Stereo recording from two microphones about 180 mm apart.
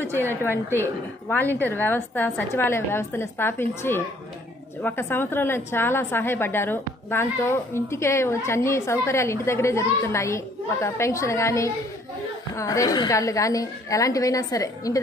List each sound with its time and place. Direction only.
0.0 s a woman's voice: 10° left (ahead or behind)